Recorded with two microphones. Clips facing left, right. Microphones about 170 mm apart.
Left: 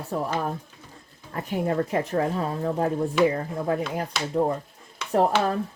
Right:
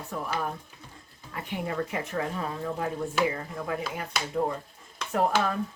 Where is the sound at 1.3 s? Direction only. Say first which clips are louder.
Left 7 dB; 40° left (ahead or behind).